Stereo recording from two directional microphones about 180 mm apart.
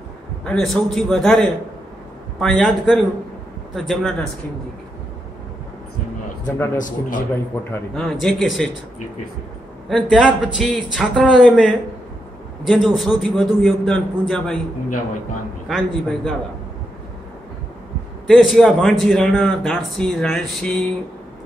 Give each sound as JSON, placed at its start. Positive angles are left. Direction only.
{"t": 0.5, "sound": "a man's voice", "side_deg": 0}
{"t": 6.4, "sound": "a man's voice", "side_deg": 15}
{"t": 6.8, "sound": "a man's voice", "side_deg": 45}
{"t": 7.7, "sound": "a man's voice", "side_deg": 5}
{"t": 9.8, "sound": "a man's voice", "side_deg": 5}
{"t": 15.7, "sound": "a man's voice", "side_deg": 0}
{"t": 18.2, "sound": "a man's voice", "side_deg": 0}